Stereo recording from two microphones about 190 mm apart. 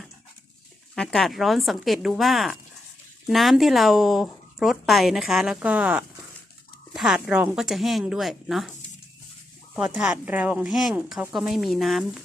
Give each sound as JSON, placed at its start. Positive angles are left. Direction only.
{"t": 0.9, "sound": "speech", "side_deg": 0}
{"t": 9.7, "sound": "speech", "side_deg": 0}